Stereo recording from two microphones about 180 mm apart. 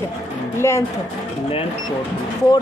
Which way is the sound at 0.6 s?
15° left (ahead or behind).